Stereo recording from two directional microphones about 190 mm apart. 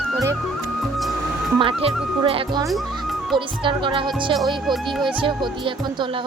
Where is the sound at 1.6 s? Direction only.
30° right (ahead or behind).